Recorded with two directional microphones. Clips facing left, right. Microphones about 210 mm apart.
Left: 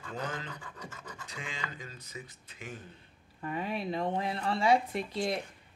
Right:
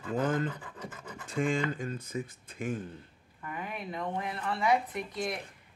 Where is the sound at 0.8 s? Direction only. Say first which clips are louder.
Right 3 dB; 10° right (ahead or behind).